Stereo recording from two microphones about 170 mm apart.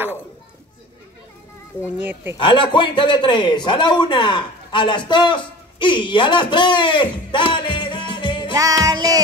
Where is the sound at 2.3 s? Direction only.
30° left (ahead or behind).